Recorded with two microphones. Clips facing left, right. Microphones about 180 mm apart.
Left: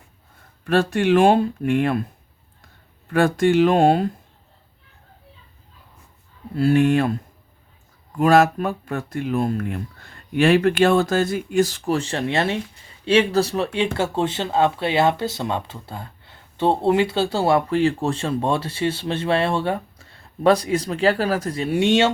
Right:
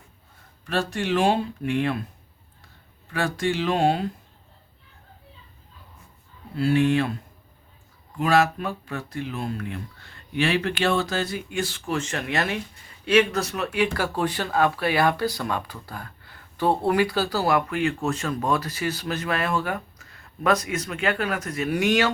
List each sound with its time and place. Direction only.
0.6 s speech: 55° left (ahead or behind)
3.1 s speech: 50° left (ahead or behind)
6.6 s speech: 45° left (ahead or behind)
8.2 s speech: 45° left (ahead or behind); by 22.1 s 25° left (ahead or behind)